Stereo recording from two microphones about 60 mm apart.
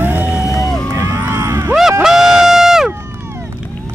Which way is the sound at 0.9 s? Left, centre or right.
Right.